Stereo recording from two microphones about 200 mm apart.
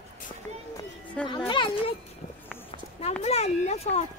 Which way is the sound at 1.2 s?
25° left (ahead or behind).